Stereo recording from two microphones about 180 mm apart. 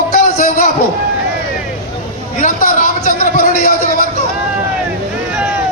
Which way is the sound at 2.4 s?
50° left (ahead or behind).